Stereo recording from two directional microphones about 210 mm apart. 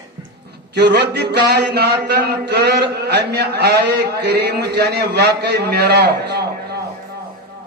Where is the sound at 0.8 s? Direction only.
55° right (ahead or behind).